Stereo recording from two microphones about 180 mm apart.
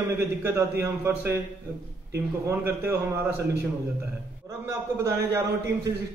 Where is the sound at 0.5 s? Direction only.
15° right (ahead or behind).